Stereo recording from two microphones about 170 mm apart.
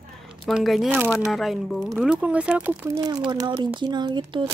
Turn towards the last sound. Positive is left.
turn(degrees=-25)  # may be behind; listen again after turning